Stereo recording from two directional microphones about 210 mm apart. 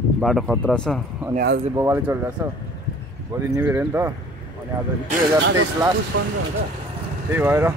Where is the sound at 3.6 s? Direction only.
10° right (ahead or behind).